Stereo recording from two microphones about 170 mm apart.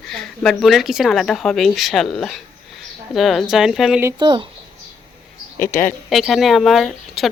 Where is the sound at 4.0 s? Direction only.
20° right (ahead or behind).